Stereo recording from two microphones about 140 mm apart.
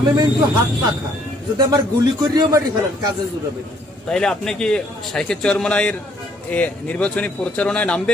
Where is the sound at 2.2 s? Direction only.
25° right (ahead or behind).